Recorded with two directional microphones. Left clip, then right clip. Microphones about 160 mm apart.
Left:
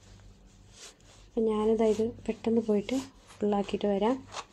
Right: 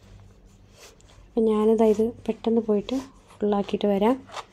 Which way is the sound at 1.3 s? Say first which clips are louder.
Right 6 dB; 40° right (ahead or behind).